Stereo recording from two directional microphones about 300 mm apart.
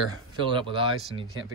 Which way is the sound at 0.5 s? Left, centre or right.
Centre.